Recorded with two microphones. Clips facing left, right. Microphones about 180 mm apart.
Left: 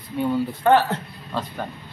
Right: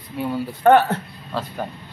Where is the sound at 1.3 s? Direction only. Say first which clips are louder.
Right 1 dB; 5° right (ahead or behind).